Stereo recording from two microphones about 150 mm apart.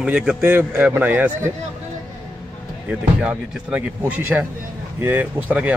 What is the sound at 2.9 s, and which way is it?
Speech, 10° right (ahead or behind).